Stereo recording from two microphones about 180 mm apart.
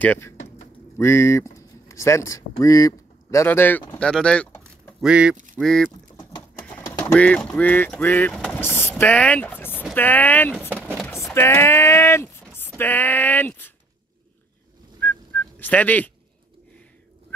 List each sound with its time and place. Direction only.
0.0 s speech: 10° left (ahead or behind)
5.0 s speech: 5° right (ahead or behind)
6.9 s speech: 10° left (ahead or behind)
10.8 s a sound: 5° right (ahead or behind)
11.3 s speech: 15° left (ahead or behind)
15.0 s whistling: 10° left (ahead or behind)